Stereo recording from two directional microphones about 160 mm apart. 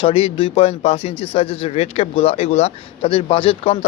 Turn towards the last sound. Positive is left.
turn(degrees=35)  # may be behind; listen again after turning